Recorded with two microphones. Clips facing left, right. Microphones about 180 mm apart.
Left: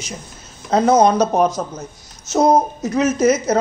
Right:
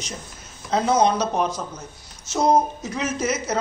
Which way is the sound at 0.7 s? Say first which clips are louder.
Left 6 dB; 45° left (ahead or behind).